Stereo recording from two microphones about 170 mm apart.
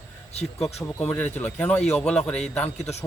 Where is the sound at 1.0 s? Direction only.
10° left (ahead or behind).